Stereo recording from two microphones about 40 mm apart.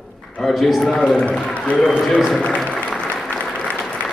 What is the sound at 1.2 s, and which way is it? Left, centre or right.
Speech, left.